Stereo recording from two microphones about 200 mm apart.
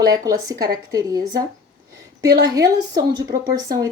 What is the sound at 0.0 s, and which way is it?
Speech, 20° right (ahead or behind).